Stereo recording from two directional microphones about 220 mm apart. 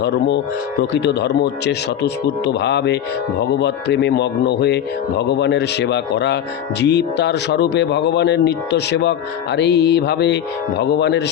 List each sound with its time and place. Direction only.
0.0 s speech: 50° left (ahead or behind)